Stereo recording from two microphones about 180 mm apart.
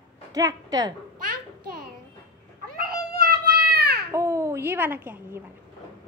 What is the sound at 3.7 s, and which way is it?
Baby cry, 60° right (ahead or behind).